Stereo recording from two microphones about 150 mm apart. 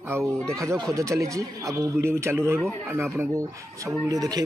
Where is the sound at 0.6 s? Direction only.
25° right (ahead or behind).